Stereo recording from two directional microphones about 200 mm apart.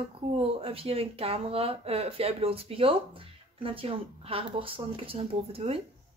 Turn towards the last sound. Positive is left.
turn(degrees=-30)  # may be behind; listen again after turning